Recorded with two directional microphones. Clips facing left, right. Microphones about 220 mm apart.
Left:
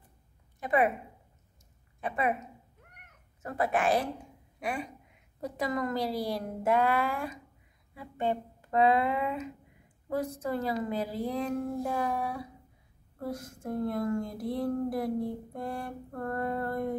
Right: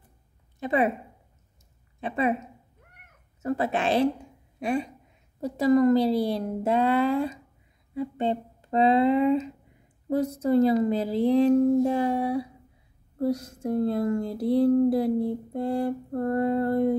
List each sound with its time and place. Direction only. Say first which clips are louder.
0.6 s speech: right 3 dB; 25° right (ahead or behind)
2.0 s speech: right 5 dB; 25° right (ahead or behind)
3.4 s speech: right 3 dB; 25° right (ahead or behind)